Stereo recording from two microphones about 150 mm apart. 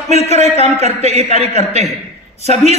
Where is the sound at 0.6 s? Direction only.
45° right (ahead or behind).